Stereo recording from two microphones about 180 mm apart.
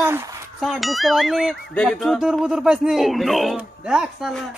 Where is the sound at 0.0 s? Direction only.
15° right (ahead or behind).